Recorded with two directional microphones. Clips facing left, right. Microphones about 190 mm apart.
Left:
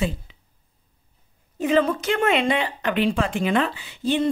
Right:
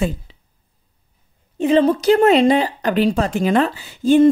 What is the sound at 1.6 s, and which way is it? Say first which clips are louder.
Speech: right 5 dB; 30° right (ahead or behind).